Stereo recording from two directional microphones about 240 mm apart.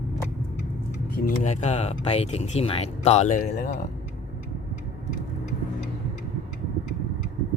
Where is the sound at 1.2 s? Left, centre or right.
Left.